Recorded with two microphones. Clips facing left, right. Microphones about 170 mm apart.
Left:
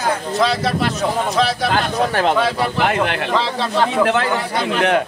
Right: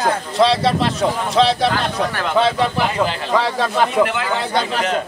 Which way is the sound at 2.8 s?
65° left (ahead or behind).